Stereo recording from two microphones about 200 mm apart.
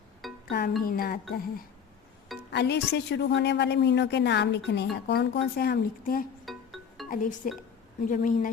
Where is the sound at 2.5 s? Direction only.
60° left (ahead or behind).